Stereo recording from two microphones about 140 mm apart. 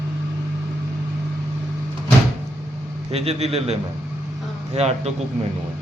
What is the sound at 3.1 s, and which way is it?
A man's voice, 45° right (ahead or behind).